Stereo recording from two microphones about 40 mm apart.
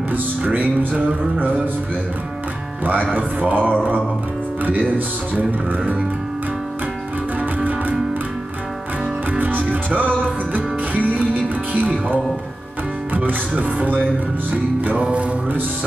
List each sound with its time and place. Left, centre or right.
2.8 s speech: right
3.2 s mantra: right
4.6 s speech: right
9.4 s speech: right
11.7 s speech: right
13.1 s speech: right
15.0 s music: right